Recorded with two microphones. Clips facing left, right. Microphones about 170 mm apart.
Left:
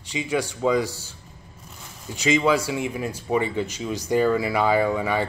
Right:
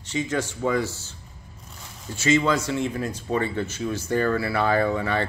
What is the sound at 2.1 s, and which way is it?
Speech, 15° left (ahead or behind).